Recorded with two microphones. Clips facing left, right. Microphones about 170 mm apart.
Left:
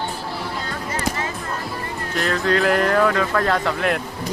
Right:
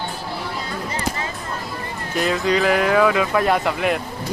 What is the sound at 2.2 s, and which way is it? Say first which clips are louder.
Speech: right 1 dB; 5° right (ahead or behind).